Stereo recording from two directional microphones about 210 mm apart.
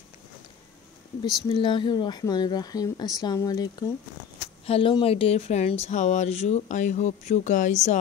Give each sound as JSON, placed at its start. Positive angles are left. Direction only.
{"t": 1.5, "sound": "speech", "side_deg": 25}